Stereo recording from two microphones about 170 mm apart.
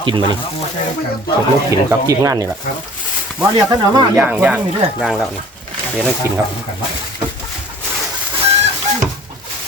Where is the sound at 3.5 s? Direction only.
25° right (ahead or behind).